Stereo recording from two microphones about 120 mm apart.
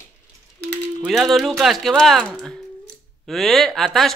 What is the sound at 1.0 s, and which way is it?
Speech, centre (ahead or behind).